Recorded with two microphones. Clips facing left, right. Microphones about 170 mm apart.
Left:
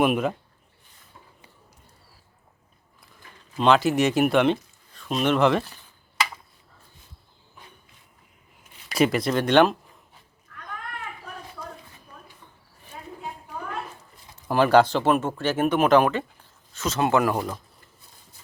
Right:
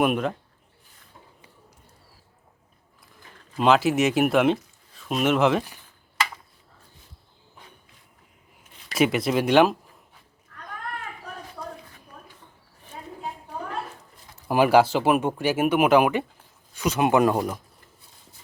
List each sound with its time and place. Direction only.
0.0 s speech: 5° left (ahead or behind)
3.6 s speech: 5° right (ahead or behind)
9.0 s speech: centre (ahead or behind)
14.4 s speech: 10° right (ahead or behind)